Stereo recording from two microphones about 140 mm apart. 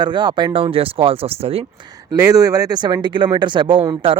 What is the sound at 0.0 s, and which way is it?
Speech, 35° right (ahead or behind).